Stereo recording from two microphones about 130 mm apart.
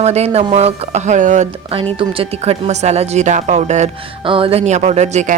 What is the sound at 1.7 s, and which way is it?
A woman's voice, 45° right (ahead or behind).